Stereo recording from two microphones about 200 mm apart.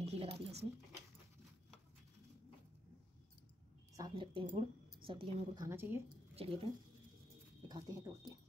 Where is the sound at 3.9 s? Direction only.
20° right (ahead or behind).